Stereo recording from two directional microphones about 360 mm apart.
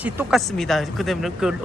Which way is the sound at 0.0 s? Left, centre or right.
Centre.